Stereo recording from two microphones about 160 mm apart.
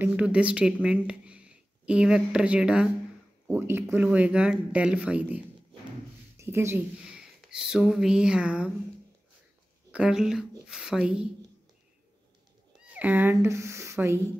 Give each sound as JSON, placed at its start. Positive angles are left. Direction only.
{"t": 0.0, "sound": "speech", "side_deg": -10}
{"t": 7.1, "sound": "speech", "side_deg": -5}
{"t": 9.8, "sound": "speech", "side_deg": -5}
{"t": 12.9, "sound": "speech", "side_deg": -10}